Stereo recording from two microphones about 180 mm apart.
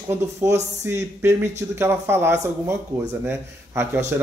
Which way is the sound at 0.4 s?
15° right (ahead or behind).